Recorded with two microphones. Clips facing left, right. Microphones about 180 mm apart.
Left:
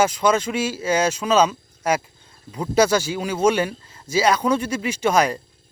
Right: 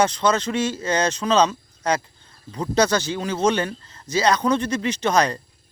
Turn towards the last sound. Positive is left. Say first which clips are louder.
# left 1 dB
turn(degrees=10)  # may be behind; listen again after turning